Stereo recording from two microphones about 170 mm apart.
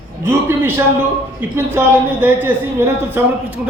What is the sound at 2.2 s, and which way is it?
A man's voice, 15° right (ahead or behind).